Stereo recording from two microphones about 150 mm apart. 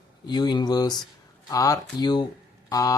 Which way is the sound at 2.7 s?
25° left (ahead or behind).